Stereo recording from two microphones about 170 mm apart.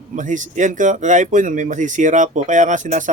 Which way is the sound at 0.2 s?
45° right (ahead or behind).